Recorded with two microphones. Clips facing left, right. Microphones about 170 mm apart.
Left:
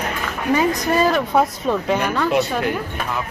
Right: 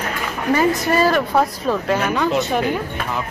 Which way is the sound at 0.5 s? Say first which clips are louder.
Right 1 dB; centre (ahead or behind).